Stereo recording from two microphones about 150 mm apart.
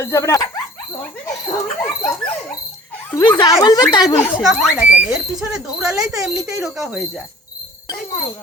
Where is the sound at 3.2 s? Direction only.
30° left (ahead or behind).